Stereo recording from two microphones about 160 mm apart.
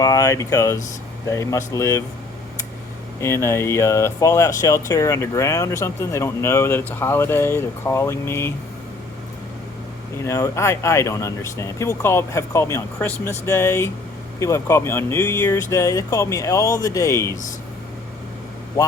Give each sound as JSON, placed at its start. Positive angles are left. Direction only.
{"t": 0.0, "sound": "speech", "side_deg": 20}
{"t": 3.2, "sound": "speech", "side_deg": 15}
{"t": 10.2, "sound": "speech", "side_deg": 20}